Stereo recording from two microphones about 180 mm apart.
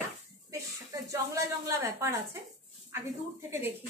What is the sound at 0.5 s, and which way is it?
A woman's voice, 15° right (ahead or behind).